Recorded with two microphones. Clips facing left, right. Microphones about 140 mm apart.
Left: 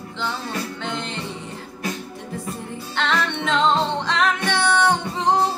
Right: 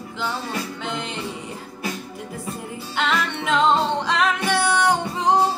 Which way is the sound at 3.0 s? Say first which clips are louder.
Left 1 dB; 5° right (ahead or behind).